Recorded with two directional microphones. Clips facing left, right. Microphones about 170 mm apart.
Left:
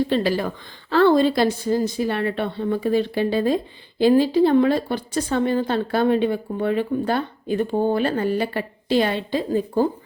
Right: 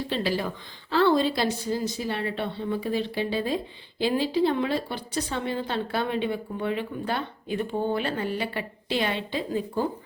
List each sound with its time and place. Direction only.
0.1 s speech: 50° left (ahead or behind)